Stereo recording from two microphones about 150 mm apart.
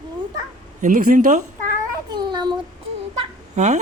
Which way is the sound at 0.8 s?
65° right (ahead or behind).